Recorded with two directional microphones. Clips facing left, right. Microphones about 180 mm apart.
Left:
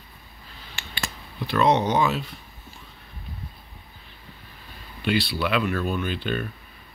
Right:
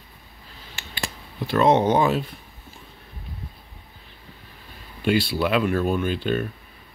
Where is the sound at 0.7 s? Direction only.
40° right (ahead or behind).